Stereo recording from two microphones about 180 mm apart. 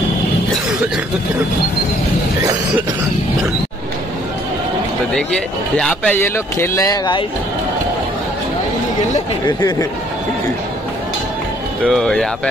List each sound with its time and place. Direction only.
5.1 s a man's voice: centre (ahead or behind); by 7.2 s 25° left (ahead or behind)
9.5 s speech: 20° left (ahead or behind)
11.8 s speech: centre (ahead or behind)